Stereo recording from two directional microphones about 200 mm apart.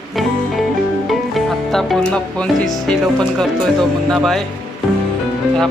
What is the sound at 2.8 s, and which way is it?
Speech, 5° left (ahead or behind).